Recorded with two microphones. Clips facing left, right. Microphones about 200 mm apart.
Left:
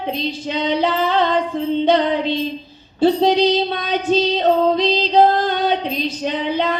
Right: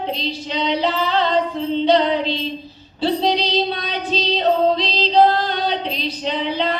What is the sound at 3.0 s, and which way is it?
Female singing, 50° left (ahead or behind).